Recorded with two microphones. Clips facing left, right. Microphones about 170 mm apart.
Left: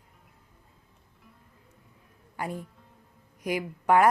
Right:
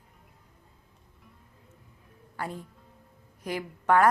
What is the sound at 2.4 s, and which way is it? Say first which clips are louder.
A woman's voice: left 2 dB; 10° left (ahead or behind).